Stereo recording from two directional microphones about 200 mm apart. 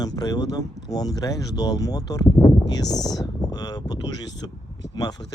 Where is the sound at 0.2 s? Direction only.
20° left (ahead or behind).